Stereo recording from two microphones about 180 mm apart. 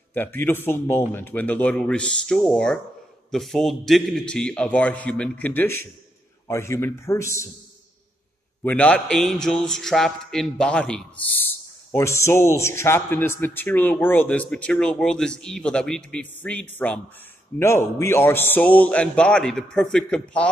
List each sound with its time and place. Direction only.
0.1 s a man's voice: 10° left (ahead or behind)
8.6 s a man's voice: 5° left (ahead or behind)
11.9 s a man's voice: 15° left (ahead or behind)